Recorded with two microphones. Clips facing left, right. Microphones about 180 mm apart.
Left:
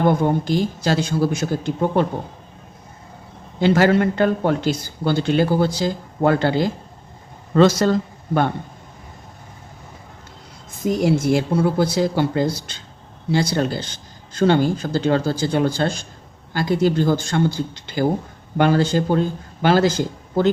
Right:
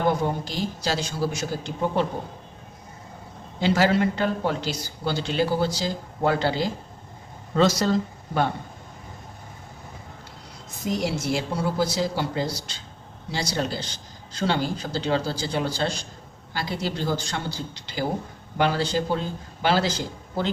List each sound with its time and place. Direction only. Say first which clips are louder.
0.1 s speech: left 7 dB; 55° left (ahead or behind)
3.6 s speech: left 5 dB; 55° left (ahead or behind)
10.8 s speech: left 8 dB; 50° left (ahead or behind)